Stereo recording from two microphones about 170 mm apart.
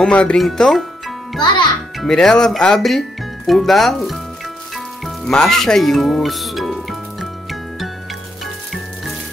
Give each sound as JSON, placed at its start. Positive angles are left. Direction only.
{"t": 0.0, "sound": "speech", "side_deg": 5}
{"t": 2.0, "sound": "speech", "side_deg": 0}
{"t": 5.0, "sound": "music", "side_deg": 5}